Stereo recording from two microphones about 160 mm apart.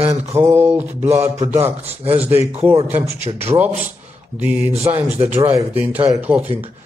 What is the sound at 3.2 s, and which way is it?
Speech, 40° right (ahead or behind).